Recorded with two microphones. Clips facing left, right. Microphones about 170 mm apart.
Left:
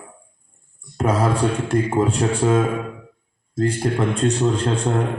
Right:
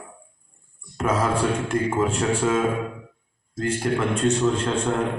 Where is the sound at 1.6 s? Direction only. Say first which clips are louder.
Left 3 dB; 35° left (ahead or behind).